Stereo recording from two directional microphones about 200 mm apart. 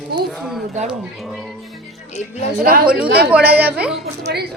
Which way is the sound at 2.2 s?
35° left (ahead or behind).